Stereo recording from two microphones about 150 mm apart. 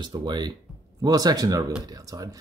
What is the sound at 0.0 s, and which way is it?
Speech, 30° right (ahead or behind).